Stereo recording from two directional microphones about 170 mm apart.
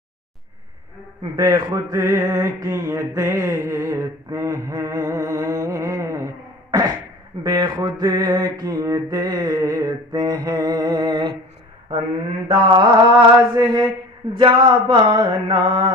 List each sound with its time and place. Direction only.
1.3 s mantra: 20° right (ahead or behind)
12.4 s mantra: 30° right (ahead or behind)